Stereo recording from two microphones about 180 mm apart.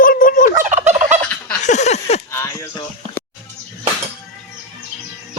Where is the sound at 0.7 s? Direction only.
40° right (ahead or behind).